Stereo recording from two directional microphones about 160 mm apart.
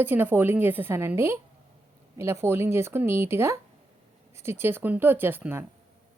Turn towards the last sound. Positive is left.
turn(degrees=-15)  # may be behind; listen again after turning